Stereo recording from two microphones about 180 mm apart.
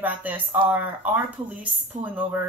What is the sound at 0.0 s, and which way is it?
Speech, 10° right (ahead or behind).